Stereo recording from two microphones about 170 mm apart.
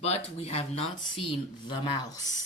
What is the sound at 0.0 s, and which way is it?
Speech, 40° left (ahead or behind).